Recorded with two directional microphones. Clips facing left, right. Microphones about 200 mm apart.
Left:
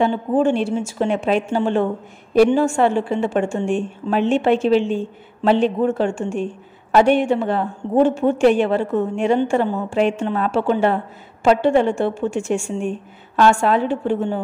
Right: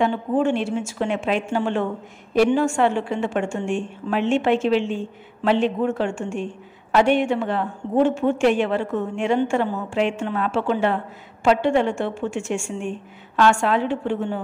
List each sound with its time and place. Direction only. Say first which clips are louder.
0.0 s a woman's voice: left 3 dB; 35° left (ahead or behind)